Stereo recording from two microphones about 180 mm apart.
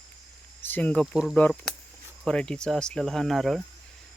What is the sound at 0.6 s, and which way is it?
Cricket, 10° left (ahead or behind).